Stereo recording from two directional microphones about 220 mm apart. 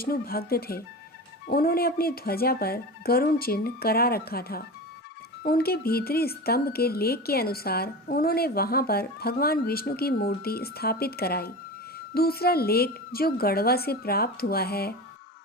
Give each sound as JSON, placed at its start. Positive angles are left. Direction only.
{"t": 0.0, "sound": "speech", "side_deg": 45}